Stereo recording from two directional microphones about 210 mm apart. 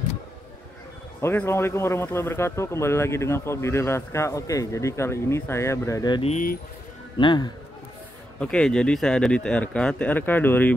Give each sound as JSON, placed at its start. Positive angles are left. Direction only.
{"t": 1.2, "sound": "speech", "side_deg": 10}
{"t": 6.3, "sound": "speech", "side_deg": 40}
{"t": 7.2, "sound": "a man's voice", "side_deg": 20}
{"t": 8.4, "sound": "speech", "side_deg": 5}